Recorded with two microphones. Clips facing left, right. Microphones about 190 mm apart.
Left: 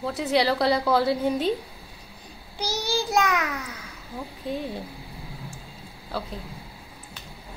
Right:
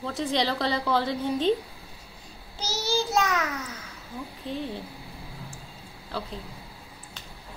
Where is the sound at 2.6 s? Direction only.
15° left (ahead or behind).